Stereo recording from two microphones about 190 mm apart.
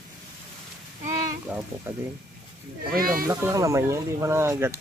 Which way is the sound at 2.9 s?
50° right (ahead or behind).